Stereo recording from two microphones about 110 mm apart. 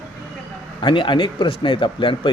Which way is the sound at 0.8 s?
45° left (ahead or behind).